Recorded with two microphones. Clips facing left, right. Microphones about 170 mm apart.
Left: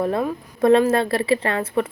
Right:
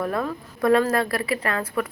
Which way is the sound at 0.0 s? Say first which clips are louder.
Left 4 dB; 25° left (ahead or behind).